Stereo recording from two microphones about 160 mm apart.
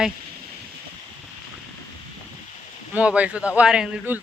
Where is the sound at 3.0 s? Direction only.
10° right (ahead or behind).